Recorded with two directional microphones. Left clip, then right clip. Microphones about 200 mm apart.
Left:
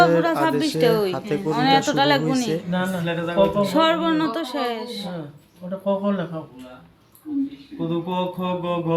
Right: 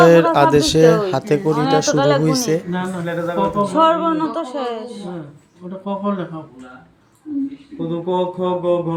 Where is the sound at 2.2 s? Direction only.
25° right (ahead or behind).